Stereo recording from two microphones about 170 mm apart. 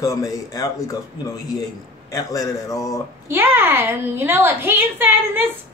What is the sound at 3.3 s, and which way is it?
A woman's voice, 15° right (ahead or behind).